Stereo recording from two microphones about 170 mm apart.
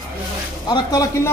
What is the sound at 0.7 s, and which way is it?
Speech, 20° left (ahead or behind).